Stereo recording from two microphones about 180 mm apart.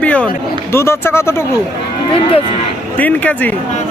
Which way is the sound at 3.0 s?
10° left (ahead or behind).